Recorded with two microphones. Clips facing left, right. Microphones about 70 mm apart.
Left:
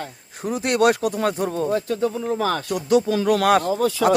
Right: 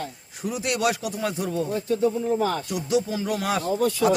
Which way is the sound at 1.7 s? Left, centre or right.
Left.